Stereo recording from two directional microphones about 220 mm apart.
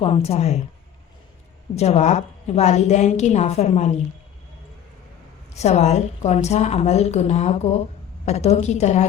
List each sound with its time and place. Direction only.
0.0 s a woman's voice: 25° left (ahead or behind)
1.7 s a woman's voice: 30° left (ahead or behind)
5.5 s a woman's voice: 30° left (ahead or behind)